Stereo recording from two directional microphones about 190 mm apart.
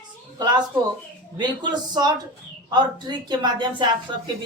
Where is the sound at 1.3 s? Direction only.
25° right (ahead or behind).